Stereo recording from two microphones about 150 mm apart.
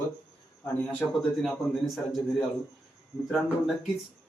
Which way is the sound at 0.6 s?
10° left (ahead or behind).